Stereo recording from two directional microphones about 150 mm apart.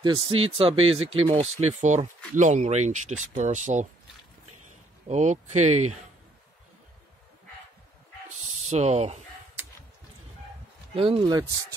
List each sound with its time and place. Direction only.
0.0 s speech: 35° right (ahead or behind)
2.3 s speech: 50° right (ahead or behind)
5.0 s speech: 50° right (ahead or behind)
8.4 s a sound: 45° right (ahead or behind)
11.0 s speech: 35° right (ahead or behind)